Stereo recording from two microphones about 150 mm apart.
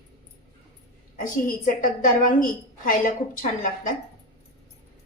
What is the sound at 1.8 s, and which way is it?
A woman's voice, 65° left (ahead or behind).